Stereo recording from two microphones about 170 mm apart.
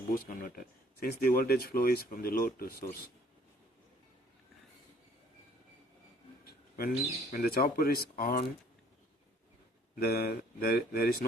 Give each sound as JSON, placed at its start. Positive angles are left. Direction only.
{"t": 0.1, "sound": "speech", "side_deg": 55}
{"t": 6.4, "sound": "a sound", "side_deg": 65}
{"t": 7.3, "sound": "speech", "side_deg": 60}
{"t": 10.0, "sound": "speech", "side_deg": 65}